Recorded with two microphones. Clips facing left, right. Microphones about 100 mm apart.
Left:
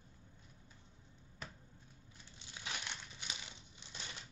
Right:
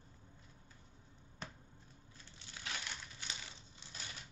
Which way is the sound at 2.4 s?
20° left (ahead or behind).